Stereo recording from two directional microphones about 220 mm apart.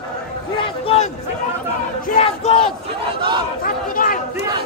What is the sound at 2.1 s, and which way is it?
Battle cry, 30° left (ahead or behind).